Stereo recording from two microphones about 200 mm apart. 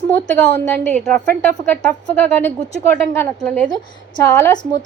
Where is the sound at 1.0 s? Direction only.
5° left (ahead or behind).